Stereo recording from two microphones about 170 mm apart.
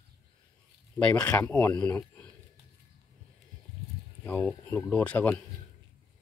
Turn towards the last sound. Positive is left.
turn(degrees=10)  # may be behind; listen again after turning